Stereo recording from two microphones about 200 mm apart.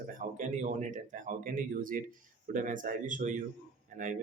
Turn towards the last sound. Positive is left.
turn(degrees=-40)  # may be behind; listen again after turning